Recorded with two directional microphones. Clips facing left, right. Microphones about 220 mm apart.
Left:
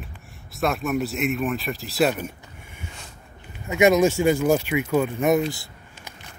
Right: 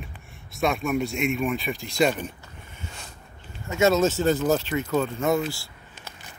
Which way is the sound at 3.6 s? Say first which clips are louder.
Left 3 dB; 15° left (ahead or behind).